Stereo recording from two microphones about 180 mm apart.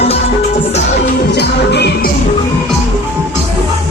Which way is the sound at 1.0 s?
65° left (ahead or behind).